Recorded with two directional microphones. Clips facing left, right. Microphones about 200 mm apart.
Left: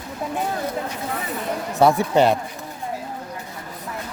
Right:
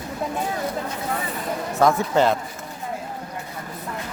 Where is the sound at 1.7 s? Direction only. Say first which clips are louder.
Left 2 dB; 15° left (ahead or behind).